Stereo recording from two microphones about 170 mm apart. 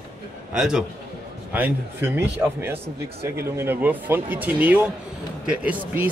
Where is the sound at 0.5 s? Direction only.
5° right (ahead or behind).